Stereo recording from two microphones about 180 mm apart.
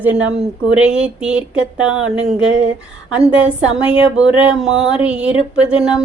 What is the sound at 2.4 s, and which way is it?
Speech, 90° right.